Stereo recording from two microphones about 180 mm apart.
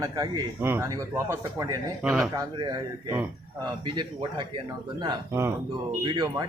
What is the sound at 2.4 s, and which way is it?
A man's voice, 20° right (ahead or behind).